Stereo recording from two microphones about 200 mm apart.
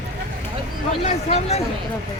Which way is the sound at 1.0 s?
30° left (ahead or behind).